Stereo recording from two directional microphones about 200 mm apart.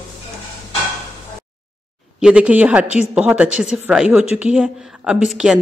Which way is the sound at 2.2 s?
5° right (ahead or behind).